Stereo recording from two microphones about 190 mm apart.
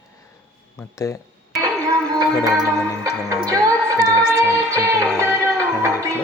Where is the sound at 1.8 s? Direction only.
20° right (ahead or behind).